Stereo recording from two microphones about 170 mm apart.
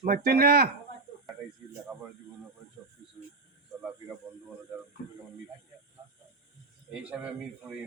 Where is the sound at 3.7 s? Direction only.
Centre (ahead or behind).